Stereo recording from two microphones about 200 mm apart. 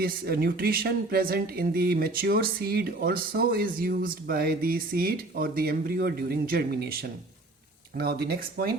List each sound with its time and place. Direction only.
0.0 s speech: 50° right (ahead or behind)